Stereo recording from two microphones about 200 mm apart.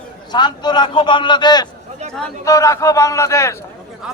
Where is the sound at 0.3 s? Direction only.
20° left (ahead or behind).